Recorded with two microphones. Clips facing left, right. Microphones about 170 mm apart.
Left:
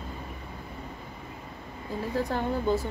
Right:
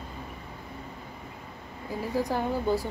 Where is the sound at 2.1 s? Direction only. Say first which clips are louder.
Right 1 dB; 10° right (ahead or behind).